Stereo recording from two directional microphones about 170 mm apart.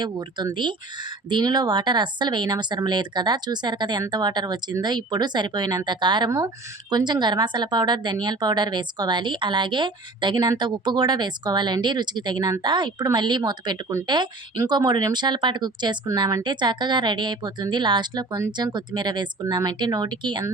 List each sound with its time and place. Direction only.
0.0 s a woman's voice: 25° right (ahead or behind)